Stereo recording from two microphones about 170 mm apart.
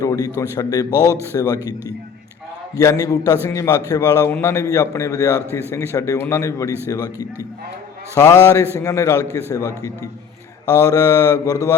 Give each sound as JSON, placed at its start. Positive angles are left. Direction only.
{"t": 0.0, "sound": "mantra", "side_deg": 20}
{"t": 2.7, "sound": "mantra", "side_deg": 20}
{"t": 3.4, "sound": "a man's voice", "side_deg": 20}
{"t": 6.8, "sound": "mantra", "side_deg": 20}
{"t": 8.1, "sound": "a man's voice", "side_deg": 20}
{"t": 9.5, "sound": "mantra", "side_deg": 20}